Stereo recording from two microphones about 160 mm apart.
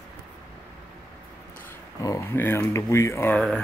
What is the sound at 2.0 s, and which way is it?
Speech, 15° left (ahead or behind).